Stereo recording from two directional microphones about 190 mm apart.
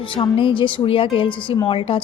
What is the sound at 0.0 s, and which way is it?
A woman's voice, 30° left (ahead or behind).